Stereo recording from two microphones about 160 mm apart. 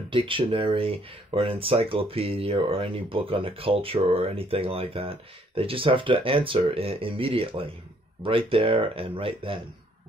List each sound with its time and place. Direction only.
0.1 s speech: 35° right (ahead or behind)